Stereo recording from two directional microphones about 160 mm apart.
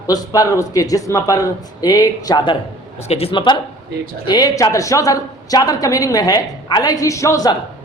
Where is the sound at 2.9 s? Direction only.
40° left (ahead or behind); by 7.5 s 20° left (ahead or behind).